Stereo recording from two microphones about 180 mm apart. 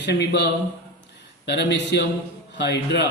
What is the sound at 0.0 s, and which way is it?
A man's voice, 70° left (ahead or behind).